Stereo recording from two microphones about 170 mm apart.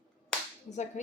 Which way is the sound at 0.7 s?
45° left (ahead or behind).